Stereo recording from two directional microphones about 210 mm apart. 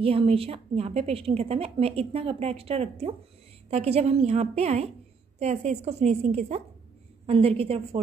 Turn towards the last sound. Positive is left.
turn(degrees=-25)  # may be behind; listen again after turning